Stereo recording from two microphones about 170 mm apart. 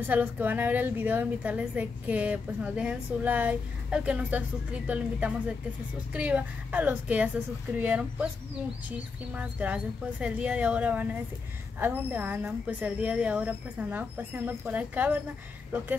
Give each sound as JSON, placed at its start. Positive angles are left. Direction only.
{"t": 0.0, "sound": "a woman's voice", "side_deg": -10}